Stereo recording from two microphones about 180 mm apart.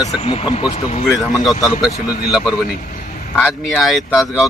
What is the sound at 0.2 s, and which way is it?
Speech, 35° left (ahead or behind).